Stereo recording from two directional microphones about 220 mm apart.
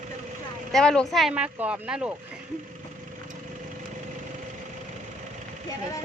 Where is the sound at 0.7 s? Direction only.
5° left (ahead or behind).